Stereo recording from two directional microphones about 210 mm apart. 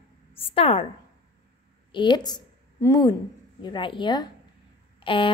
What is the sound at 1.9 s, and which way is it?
A woman's voice, 20° left (ahead or behind).